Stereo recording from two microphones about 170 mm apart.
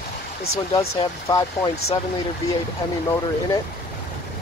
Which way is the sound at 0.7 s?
30° left (ahead or behind).